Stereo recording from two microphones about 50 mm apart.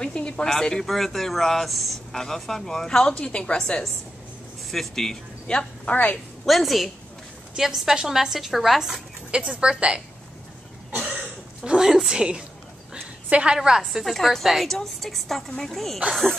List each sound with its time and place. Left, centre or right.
0.0 s speech: centre
4.6 s a woman's voice: centre
5.5 s a woman's voice: centre
6.4 s a woman's voice: centre
9.3 s a woman's voice: centre
11.6 s a woman's voice: centre
12.9 s a sound: centre
13.6 s a woman's voice: centre